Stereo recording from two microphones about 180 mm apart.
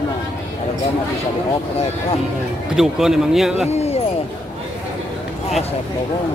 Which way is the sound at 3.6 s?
35° left (ahead or behind).